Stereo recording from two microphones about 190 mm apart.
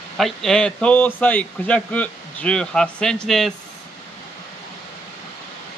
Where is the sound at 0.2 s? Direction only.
Centre (ahead or behind).